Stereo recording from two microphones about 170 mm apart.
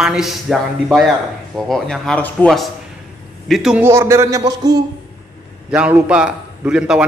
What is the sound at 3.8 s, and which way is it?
Speech, 15° right (ahead or behind).